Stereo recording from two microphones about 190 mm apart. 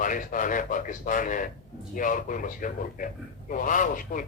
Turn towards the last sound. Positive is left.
turn(degrees=45)  # may be behind; listen again after turning